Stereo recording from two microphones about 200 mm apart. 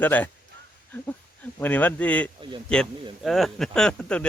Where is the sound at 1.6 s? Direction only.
10° left (ahead or behind).